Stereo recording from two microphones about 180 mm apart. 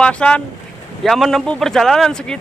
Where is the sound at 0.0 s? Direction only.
5° left (ahead or behind).